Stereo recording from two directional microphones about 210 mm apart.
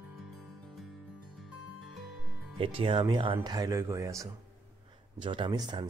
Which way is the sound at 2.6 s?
25° right (ahead or behind).